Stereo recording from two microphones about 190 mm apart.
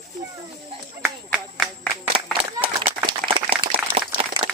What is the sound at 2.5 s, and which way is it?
Speech, 25° right (ahead or behind).